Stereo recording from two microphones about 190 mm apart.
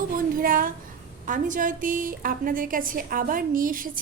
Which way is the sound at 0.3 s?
45° right (ahead or behind).